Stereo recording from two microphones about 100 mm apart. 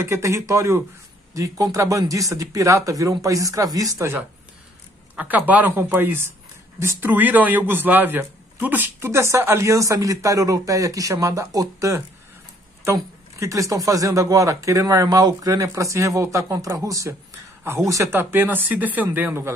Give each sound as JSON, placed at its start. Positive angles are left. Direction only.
{"t": 0.0, "sound": "a man's voice", "side_deg": -30}
{"t": 5.1, "sound": "a man's voice", "side_deg": -15}
{"t": 7.1, "sound": "a man's voice", "side_deg": -15}